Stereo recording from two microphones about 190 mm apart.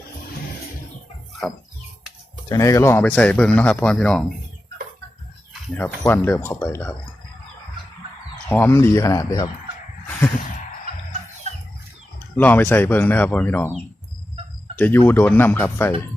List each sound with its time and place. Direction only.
2.5 s speech: 15° left (ahead or behind)
5.7 s speech: 10° left (ahead or behind)
8.4 s speech: 10° left (ahead or behind)
11.5 s chicken: 35° right (ahead or behind)
12.4 s speech: 10° left (ahead or behind)